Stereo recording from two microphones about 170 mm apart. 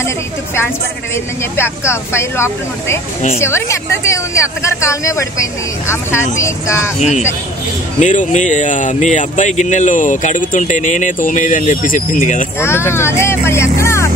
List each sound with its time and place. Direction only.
1.6 s speech: 15° left (ahead or behind)
6.3 s speech: 15° left (ahead or behind)
7.0 s speech: 45° left (ahead or behind)
12.5 s speech: 15° left (ahead or behind)